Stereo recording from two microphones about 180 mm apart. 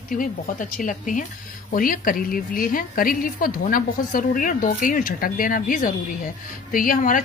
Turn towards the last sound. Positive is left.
turn(degrees=50)  # may be behind; listen again after turning